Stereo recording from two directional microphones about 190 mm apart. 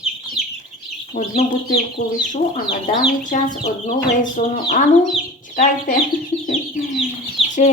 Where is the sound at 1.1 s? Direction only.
45° left (ahead or behind).